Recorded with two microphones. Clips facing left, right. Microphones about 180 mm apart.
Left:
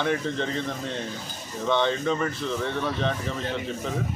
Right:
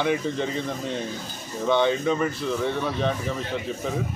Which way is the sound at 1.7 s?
5° right (ahead or behind).